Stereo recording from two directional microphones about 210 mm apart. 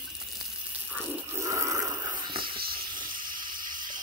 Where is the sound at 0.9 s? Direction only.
10° right (ahead or behind).